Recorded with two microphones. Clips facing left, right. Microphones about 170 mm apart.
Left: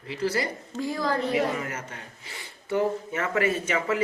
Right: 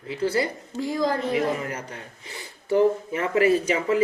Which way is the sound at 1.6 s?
35° right (ahead or behind).